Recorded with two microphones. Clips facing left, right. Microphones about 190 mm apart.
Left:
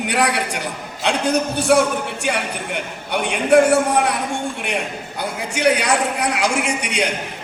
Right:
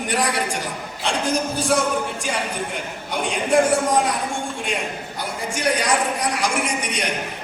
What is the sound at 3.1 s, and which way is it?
A man's voice, 65° left (ahead or behind).